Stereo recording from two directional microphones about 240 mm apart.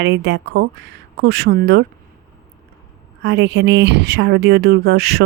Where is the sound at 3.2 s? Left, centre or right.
Right.